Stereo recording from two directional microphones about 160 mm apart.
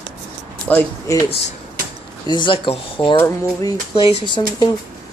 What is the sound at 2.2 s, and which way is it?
Speech, 30° left (ahead or behind).